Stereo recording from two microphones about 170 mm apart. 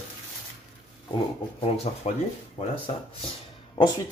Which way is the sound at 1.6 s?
40° left (ahead or behind).